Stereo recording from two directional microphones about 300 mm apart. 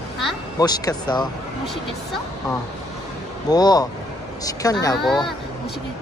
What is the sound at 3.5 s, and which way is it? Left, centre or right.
Speech, centre.